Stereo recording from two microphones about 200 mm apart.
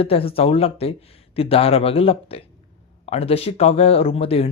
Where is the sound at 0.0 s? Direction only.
30° left (ahead or behind).